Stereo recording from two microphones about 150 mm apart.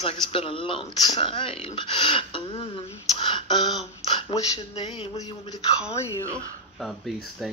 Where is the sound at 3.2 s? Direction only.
30° left (ahead or behind).